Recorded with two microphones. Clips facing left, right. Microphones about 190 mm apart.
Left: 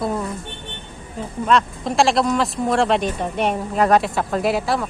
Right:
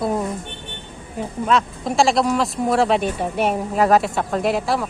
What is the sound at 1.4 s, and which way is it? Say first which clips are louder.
Speech: left 2 dB; centre (ahead or behind).